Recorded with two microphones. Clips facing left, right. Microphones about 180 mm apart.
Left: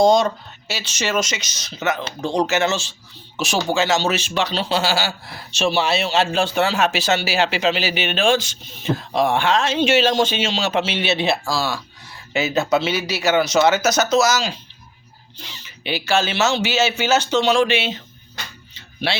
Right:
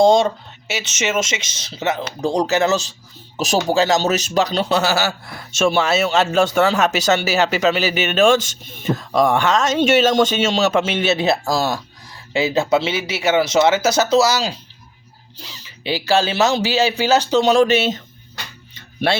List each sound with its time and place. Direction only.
0.0 s speech: 25° right (ahead or behind); by 18.0 s 40° right (ahead or behind)